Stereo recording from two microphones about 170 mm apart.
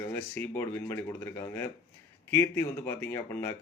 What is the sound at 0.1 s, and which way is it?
Speech, 10° left (ahead or behind).